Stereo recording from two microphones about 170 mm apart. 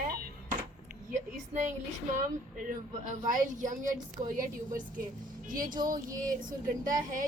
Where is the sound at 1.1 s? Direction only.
45° right (ahead or behind).